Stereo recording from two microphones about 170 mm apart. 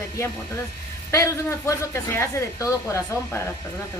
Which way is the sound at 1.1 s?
15° left (ahead or behind).